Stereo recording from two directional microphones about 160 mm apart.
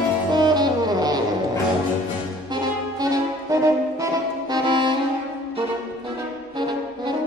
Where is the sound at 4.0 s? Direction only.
25° right (ahead or behind).